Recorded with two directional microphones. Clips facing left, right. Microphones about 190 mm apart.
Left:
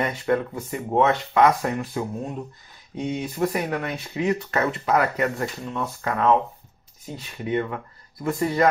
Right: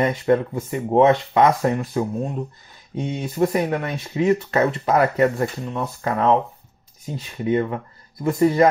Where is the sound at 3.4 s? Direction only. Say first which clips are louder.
Right 6 dB; 30° right (ahead or behind).